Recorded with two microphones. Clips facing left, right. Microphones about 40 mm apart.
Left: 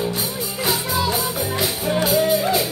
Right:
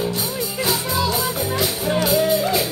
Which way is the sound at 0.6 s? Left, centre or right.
Centre.